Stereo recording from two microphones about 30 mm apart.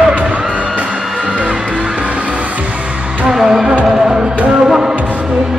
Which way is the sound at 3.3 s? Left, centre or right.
Centre.